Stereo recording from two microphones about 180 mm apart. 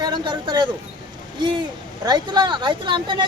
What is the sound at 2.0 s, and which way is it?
Speech, 25° right (ahead or behind).